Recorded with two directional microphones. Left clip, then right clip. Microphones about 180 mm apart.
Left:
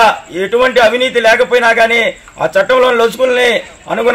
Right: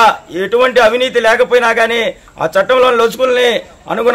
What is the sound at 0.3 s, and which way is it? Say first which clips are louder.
A man's voice: even; 20° right (ahead or behind).